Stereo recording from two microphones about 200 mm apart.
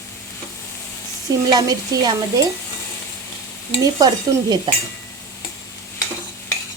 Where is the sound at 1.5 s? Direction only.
20° right (ahead or behind).